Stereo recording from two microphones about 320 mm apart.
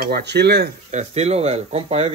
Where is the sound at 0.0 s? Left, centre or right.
Right.